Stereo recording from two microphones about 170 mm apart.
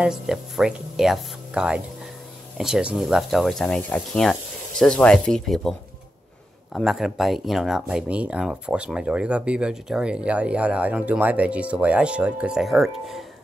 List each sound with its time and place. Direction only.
0.0 s speech: 5° right (ahead or behind)